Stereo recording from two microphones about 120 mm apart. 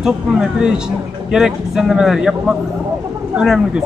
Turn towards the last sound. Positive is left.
turn(degrees=-5)  # may be behind; listen again after turning